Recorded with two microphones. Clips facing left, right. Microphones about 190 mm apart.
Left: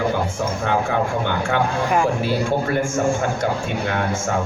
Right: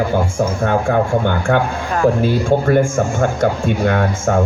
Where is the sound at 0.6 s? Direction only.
50° right (ahead or behind).